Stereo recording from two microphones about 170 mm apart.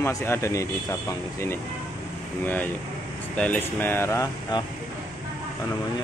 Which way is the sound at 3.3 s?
5° left (ahead or behind).